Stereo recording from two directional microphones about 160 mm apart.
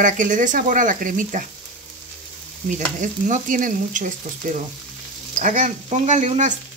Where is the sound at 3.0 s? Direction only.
55° right (ahead or behind).